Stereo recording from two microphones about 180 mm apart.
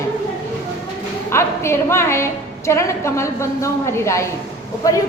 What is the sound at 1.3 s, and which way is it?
A woman's voice, 15° left (ahead or behind).